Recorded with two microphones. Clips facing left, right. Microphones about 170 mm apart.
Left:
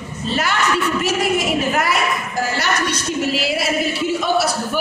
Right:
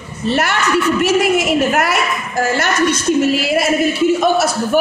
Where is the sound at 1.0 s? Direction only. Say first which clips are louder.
Right 5 dB; 80° right.